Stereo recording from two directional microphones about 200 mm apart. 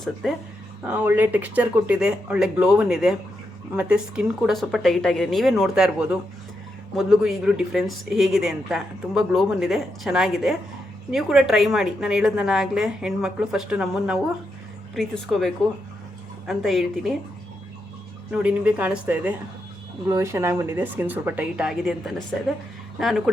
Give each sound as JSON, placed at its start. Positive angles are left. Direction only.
{"t": 0.0, "sound": "speech", "side_deg": 0}
{"t": 18.3, "sound": "speech", "side_deg": -5}